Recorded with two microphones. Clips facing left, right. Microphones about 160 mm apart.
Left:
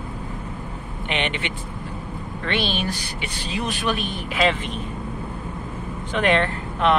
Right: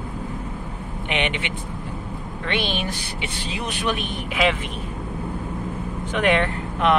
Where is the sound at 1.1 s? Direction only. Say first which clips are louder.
Right 1 dB; 15° right (ahead or behind).